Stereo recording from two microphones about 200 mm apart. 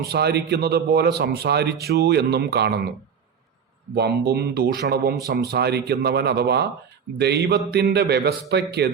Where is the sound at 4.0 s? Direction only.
55° right (ahead or behind).